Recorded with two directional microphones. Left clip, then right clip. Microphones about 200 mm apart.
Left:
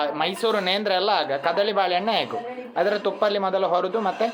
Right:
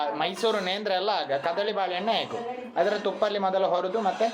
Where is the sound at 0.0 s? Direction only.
20° left (ahead or behind).